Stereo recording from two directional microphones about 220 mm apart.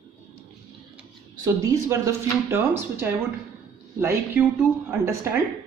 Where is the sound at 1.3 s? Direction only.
15° right (ahead or behind).